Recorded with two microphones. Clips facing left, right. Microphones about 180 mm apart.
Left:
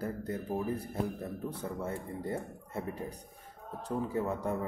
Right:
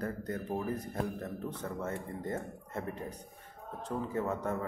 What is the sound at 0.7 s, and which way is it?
Speech, 30° left (ahead or behind).